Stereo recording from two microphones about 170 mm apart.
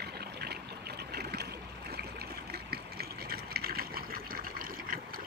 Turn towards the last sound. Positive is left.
turn(degrees=-55)  # may be behind; listen again after turning